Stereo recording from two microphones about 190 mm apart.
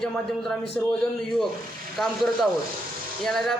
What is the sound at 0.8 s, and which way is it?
Speech, 5° left (ahead or behind).